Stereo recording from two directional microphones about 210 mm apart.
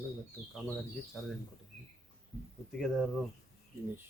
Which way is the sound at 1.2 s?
Centre (ahead or behind).